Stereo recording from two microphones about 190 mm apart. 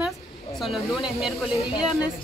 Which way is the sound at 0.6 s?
Centre (ahead or behind).